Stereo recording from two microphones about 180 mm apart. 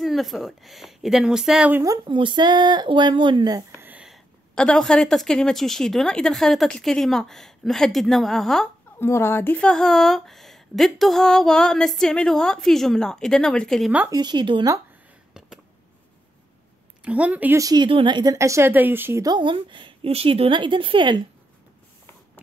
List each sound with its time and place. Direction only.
0.0 s speech: centre (ahead or behind)
2.0 s speech: 25° right (ahead or behind); by 8.6 s centre (ahead or behind)
8.9 s speech: 15° left (ahead or behind)
14.1 s speech: 25° right (ahead or behind)
17.0 s speech: 5° right (ahead or behind); by 21.3 s 25° right (ahead or behind)